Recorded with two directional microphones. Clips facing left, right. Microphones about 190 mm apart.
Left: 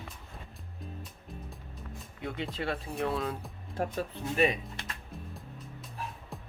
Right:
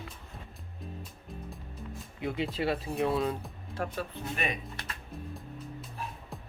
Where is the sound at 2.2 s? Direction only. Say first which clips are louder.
Right 4 dB; 5° right (ahead or behind).